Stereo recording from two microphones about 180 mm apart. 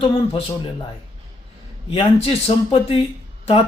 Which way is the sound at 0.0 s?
30° left (ahead or behind).